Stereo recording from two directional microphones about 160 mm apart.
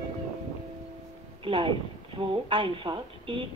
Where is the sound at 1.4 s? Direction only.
30° right (ahead or behind).